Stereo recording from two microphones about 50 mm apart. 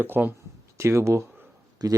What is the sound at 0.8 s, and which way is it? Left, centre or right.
Speech, right.